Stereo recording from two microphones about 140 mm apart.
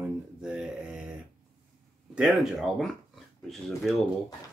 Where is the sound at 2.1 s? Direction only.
Centre (ahead or behind).